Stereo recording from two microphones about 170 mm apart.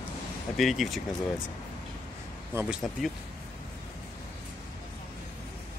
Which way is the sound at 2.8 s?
5° left (ahead or behind).